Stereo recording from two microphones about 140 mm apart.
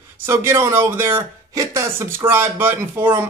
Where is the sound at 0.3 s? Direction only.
20° right (ahead or behind).